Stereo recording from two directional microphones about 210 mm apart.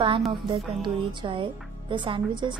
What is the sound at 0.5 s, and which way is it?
A woman's voice, 20° right (ahead or behind).